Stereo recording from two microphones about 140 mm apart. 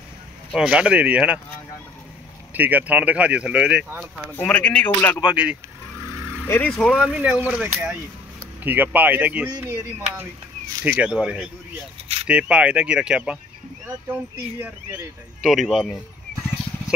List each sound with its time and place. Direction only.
0.5 s speech: 5° right (ahead or behind)
2.5 s speech: 10° right (ahead or behind)
4.2 s speech: 10° left (ahead or behind)
5.2 s speech: 10° right (ahead or behind)
6.4 s speech: 15° left (ahead or behind)
6.7 s speech: centre (ahead or behind)
14.3 s speech: 20° right (ahead or behind)
15.4 s speech: centre (ahead or behind)